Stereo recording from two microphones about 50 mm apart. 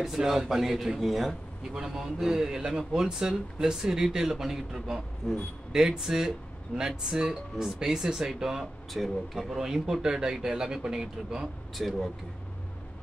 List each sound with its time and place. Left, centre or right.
0.0 s speech: centre
5.2 s a man's voice: centre
5.7 s speech: centre
8.9 s speech: centre
11.7 s speech: centre